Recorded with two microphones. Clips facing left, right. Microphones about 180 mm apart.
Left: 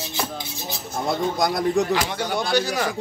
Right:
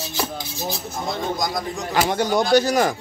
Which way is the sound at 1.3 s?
60° left (ahead or behind).